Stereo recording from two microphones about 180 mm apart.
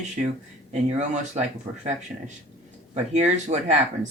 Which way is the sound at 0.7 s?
40° right (ahead or behind).